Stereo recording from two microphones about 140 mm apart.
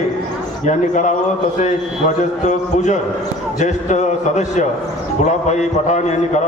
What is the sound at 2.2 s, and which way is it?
A man's voice, 60° left (ahead or behind).